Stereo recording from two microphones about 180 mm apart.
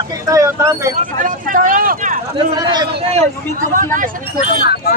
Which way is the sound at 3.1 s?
50° right (ahead or behind).